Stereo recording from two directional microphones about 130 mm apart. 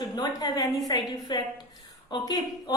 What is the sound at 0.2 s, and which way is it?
A woman's voice, 30° left (ahead or behind).